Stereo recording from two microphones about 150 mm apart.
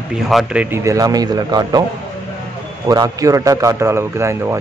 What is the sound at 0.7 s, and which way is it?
A man's voice, 20° right (ahead or behind).